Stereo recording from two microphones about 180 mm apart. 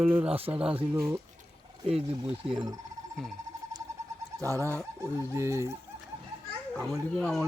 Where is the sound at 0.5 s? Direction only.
10° right (ahead or behind).